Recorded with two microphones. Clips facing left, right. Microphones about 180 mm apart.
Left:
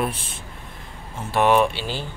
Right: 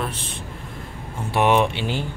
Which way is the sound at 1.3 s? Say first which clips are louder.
Left 1 dB; 15° right (ahead or behind).